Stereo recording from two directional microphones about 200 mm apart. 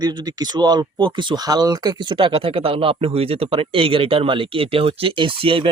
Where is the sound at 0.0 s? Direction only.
20° right (ahead or behind).